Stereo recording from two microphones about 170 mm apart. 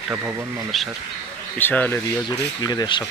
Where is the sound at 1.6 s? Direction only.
10° left (ahead or behind).